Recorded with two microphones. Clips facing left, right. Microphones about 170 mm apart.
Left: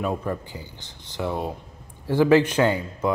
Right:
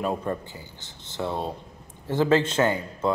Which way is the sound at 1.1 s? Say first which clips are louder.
Left 1 dB; 25° right (ahead or behind).